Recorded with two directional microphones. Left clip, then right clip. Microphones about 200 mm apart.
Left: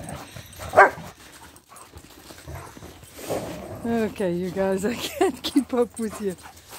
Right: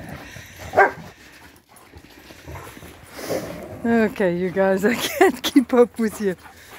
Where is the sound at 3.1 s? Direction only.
15° right (ahead or behind).